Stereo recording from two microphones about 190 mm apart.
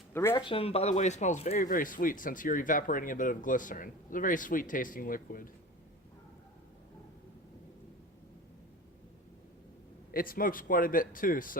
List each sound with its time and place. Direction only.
0.1 s speech: 15° left (ahead or behind)
0.4 s speech: 30° left (ahead or behind); by 5.5 s 45° left (ahead or behind)
10.1 s speech: 50° left (ahead or behind)